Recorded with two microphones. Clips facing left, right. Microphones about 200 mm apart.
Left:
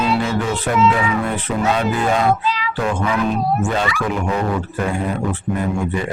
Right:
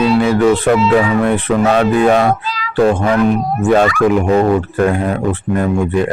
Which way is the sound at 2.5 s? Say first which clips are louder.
Left 3 dB; 40° right (ahead or behind).